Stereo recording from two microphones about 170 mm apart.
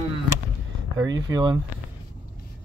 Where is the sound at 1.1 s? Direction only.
25° right (ahead or behind).